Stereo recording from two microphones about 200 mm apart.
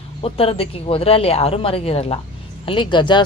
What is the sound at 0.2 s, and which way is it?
Speech, 30° left (ahead or behind).